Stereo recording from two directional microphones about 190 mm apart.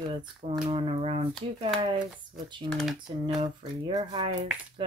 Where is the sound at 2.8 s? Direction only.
Centre (ahead or behind).